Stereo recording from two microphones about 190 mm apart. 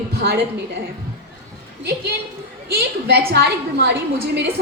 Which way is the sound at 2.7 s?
60° right (ahead or behind).